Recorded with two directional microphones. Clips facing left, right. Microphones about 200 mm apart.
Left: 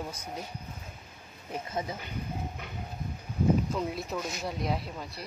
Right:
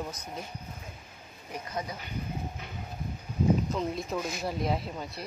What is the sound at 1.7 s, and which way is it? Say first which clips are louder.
Speech: left 1 dB; 25° left (ahead or behind).